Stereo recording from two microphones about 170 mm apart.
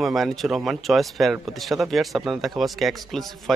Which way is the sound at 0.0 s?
Centre (ahead or behind).